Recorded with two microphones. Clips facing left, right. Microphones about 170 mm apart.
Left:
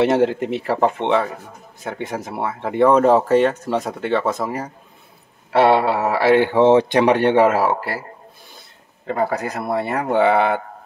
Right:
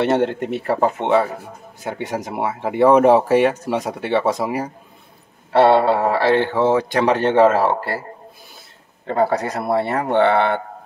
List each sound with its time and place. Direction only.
0.0 s speech: centre (ahead or behind); by 4.6 s 15° right (ahead or behind)
5.6 s speech: 10° left (ahead or behind)
9.1 s speech: 30° right (ahead or behind)
9.8 s speech: centre (ahead or behind)